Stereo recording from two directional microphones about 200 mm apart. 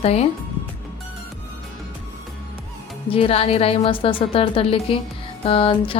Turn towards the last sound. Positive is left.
turn(degrees=25)  # may be behind; listen again after turning